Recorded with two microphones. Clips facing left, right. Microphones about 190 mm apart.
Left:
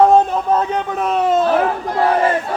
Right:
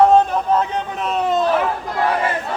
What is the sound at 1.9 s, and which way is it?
Speech, 40° left (ahead or behind).